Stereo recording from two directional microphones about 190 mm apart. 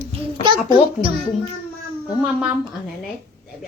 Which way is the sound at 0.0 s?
30° right (ahead or behind).